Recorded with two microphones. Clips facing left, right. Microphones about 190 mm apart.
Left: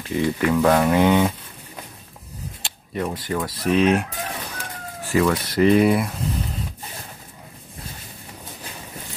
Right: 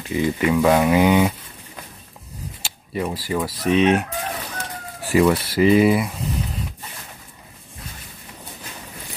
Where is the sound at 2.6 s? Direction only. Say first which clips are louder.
Right 1 dB; 5° right (ahead or behind).